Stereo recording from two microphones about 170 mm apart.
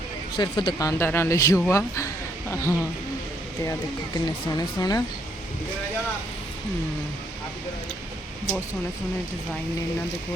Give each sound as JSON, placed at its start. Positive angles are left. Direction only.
{"t": 0.3, "sound": "a man's voice", "side_deg": 25}
{"t": 4.5, "sound": "speech", "side_deg": 20}